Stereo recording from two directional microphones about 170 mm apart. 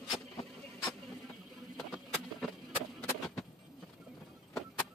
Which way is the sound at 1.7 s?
Centre (ahead or behind).